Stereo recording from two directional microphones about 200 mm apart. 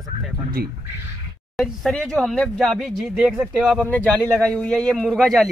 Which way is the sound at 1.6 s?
5° left (ahead or behind).